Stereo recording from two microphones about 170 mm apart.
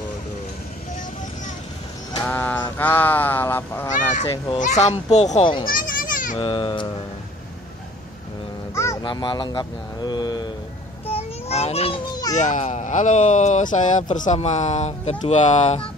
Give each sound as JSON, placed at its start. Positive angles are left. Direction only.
{"t": 2.2, "sound": "honk", "side_deg": 10}
{"t": 4.6, "sound": "speech", "side_deg": 45}
{"t": 5.7, "sound": "children playing", "side_deg": 55}
{"t": 6.3, "sound": "speech", "side_deg": 30}
{"t": 9.0, "sound": "speech", "side_deg": 25}
{"t": 11.1, "sound": "a sound", "side_deg": 35}
{"t": 12.4, "sound": "speech", "side_deg": 45}